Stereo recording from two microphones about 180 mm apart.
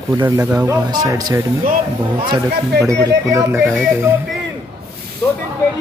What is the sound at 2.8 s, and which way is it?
Speech, 15° right (ahead or behind).